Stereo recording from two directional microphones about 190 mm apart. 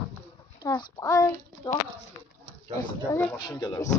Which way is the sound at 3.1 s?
10° left (ahead or behind).